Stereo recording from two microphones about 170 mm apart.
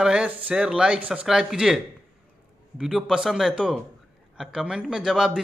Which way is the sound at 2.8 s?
Centre (ahead or behind).